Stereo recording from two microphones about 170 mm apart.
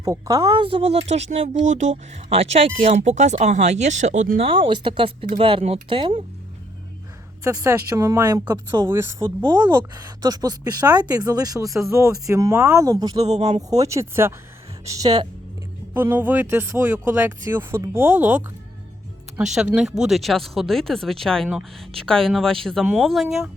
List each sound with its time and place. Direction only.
0.0 s speech: 20° right (ahead or behind)
7.4 s a woman's voice: 15° right (ahead or behind)
13.2 s speech: 40° right (ahead or behind)
13.6 s a woman's voice: 20° right (ahead or behind)
16.0 s speech: 10° right (ahead or behind)
19.5 s speech: 5° right (ahead or behind)